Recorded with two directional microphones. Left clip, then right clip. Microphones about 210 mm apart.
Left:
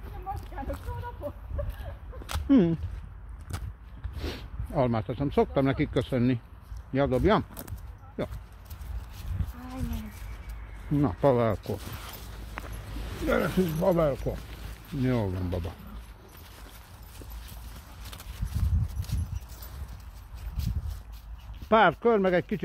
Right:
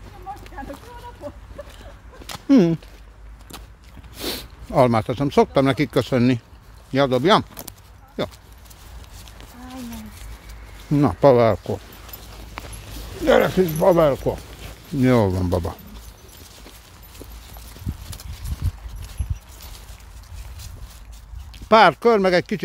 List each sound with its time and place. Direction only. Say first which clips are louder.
2.4 s speech: right 7 dB; 30° right (ahead or behind)
4.2 s speech: right 10 dB; 30° right (ahead or behind)
6.9 s speech: right 8 dB; 25° right (ahead or behind)
11.0 s speech: right 10 dB; 35° right (ahead or behind)
13.3 s speech: right 11 dB; 60° right (ahead or behind); by 15.7 s 40° right (ahead or behind)
21.6 s speech: right 8 dB; 25° right (ahead or behind)